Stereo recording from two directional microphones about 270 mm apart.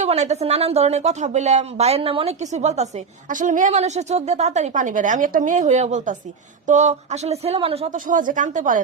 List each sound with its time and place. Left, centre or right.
0.0 s a woman's voice: right